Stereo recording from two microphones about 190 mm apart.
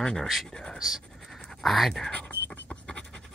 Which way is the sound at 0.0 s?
5° left (ahead or behind).